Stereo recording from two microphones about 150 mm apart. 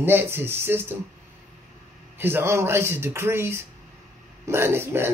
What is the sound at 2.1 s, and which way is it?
A man's voice, 15° right (ahead or behind).